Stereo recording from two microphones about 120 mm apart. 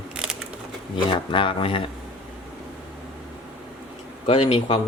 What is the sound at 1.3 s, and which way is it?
Speech, 45° left (ahead or behind).